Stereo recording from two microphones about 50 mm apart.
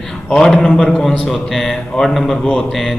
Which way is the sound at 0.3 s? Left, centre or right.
Centre.